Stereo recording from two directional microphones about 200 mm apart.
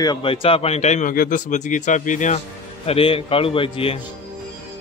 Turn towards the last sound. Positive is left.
turn(degrees=25)  # may be behind; listen again after turning